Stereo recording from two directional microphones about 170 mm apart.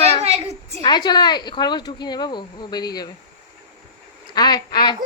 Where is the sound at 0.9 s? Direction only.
25° left (ahead or behind).